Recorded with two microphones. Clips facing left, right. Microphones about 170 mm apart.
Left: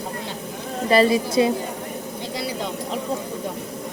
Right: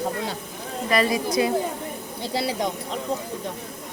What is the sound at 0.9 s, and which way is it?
Speech, 30° left (ahead or behind).